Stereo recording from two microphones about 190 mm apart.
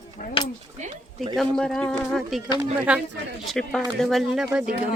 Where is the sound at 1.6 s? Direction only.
5° left (ahead or behind).